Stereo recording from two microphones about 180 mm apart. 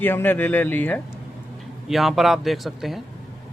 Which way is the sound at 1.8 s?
Centre (ahead or behind).